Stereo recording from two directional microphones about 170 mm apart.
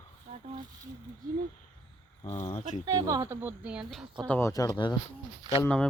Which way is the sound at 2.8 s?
20° right (ahead or behind).